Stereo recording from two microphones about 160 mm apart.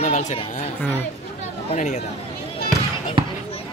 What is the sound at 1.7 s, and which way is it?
Speech, 50° left (ahead or behind).